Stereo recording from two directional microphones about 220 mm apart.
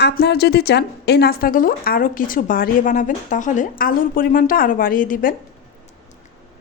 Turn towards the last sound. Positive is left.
turn(degrees=40)  # may be behind; listen again after turning